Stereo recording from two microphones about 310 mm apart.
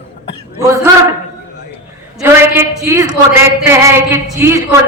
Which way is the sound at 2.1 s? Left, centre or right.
Centre.